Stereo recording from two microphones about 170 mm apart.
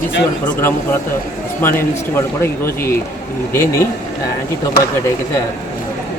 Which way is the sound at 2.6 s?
15° left (ahead or behind).